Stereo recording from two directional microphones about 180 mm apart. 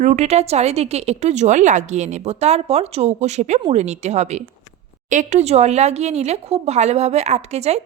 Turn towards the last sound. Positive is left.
turn(degrees=-35)  # may be behind; listen again after turning